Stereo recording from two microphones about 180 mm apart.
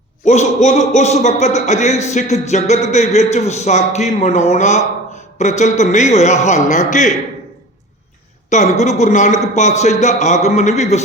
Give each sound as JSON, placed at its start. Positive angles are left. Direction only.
{"t": 0.3, "sound": "a man's voice", "side_deg": 40}
{"t": 8.4, "sound": "a man's voice", "side_deg": 40}